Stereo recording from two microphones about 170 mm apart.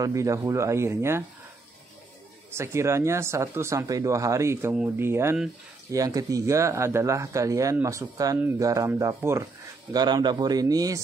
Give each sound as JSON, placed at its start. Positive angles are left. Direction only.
{"t": 0.0, "sound": "speech", "side_deg": -20}
{"t": 2.5, "sound": "speech", "side_deg": -15}